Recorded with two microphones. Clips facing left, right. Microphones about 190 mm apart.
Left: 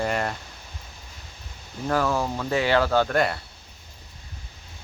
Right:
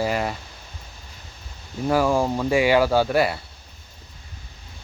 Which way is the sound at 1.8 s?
10° right (ahead or behind).